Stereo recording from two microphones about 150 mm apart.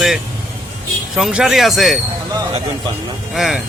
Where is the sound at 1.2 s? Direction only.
5° right (ahead or behind).